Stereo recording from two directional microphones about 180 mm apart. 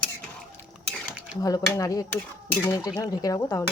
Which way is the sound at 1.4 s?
20° left (ahead or behind).